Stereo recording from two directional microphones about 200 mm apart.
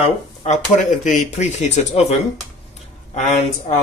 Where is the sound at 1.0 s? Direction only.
35° left (ahead or behind).